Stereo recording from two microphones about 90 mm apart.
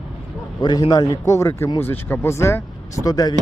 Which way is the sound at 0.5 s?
55° left (ahead or behind).